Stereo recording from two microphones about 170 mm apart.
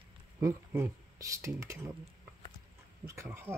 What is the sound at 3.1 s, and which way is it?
Speech, 15° right (ahead or behind).